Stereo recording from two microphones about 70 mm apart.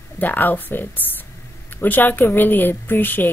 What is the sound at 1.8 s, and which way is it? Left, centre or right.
Speech, left.